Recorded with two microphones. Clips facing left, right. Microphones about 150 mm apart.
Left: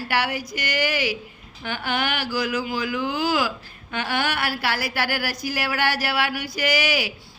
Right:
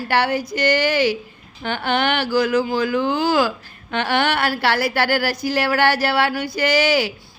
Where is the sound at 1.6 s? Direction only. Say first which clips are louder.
Right 6 dB; 60° right (ahead or behind).